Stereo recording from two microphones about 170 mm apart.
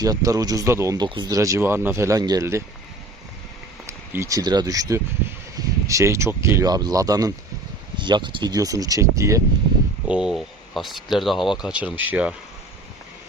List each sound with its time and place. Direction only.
0.0 s speech: 20° right (ahead or behind)
3.8 s speech: 15° right (ahead or behind)
10.1 s speech: 5° right (ahead or behind)